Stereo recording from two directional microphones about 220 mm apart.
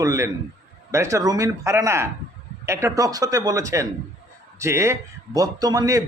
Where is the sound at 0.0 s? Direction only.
15° right (ahead or behind).